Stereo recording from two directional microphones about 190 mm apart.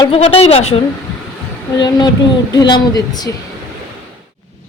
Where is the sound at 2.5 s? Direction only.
20° left (ahead or behind).